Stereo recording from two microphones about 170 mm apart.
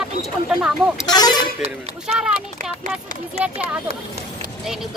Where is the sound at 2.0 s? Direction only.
5° right (ahead or behind).